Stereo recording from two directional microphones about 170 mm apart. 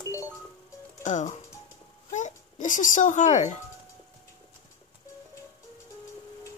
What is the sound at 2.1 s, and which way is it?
Music, 45° left (ahead or behind).